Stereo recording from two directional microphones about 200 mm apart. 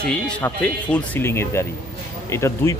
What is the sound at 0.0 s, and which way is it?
A man's voice, 5° left (ahead or behind).